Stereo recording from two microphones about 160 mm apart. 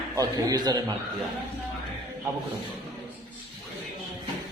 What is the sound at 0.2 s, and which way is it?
Speech, 25° right (ahead or behind).